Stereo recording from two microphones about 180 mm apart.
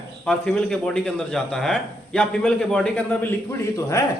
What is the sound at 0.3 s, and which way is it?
A man's voice, 5° left (ahead or behind).